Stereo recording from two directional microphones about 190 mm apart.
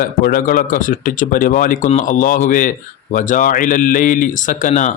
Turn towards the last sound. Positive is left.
turn(degrees=40)  # may be behind; listen again after turning